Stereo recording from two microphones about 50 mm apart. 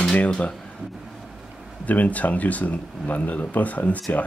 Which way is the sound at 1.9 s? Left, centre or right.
Left.